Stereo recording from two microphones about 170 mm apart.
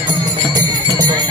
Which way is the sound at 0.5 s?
25° right (ahead or behind).